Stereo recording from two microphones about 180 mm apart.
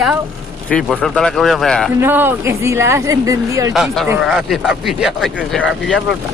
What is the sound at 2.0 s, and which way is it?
Speech, 10° right (ahead or behind).